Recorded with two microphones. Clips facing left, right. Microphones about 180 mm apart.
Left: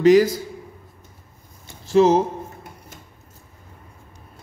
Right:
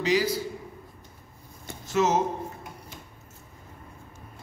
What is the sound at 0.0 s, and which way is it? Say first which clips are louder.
Speech: left 11 dB; 50° left (ahead or behind).